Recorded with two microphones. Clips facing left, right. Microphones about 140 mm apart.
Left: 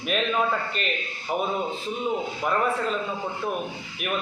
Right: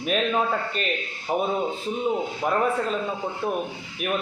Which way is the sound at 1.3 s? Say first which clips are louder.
Right 2 dB; 35° right (ahead or behind).